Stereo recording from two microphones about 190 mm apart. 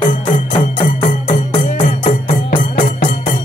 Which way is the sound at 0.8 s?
25° left (ahead or behind).